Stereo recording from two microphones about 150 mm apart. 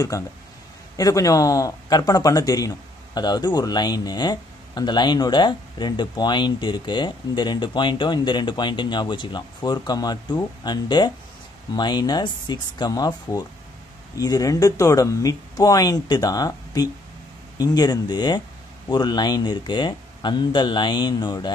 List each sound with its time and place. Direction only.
0.1 s speech: 25° left (ahead or behind)